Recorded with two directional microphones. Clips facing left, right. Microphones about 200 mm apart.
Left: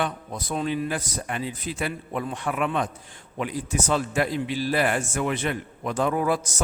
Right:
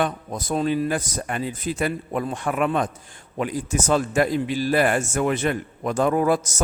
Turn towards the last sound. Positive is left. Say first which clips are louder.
# right 4 dB
turn(degrees=-45)  # may be behind; listen again after turning